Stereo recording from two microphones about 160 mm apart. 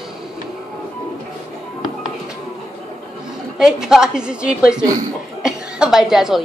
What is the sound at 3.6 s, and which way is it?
A man's voice, 5° right (ahead or behind).